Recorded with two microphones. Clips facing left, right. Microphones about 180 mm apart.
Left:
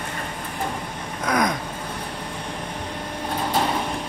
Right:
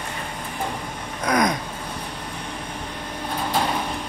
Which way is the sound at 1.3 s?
5° left (ahead or behind).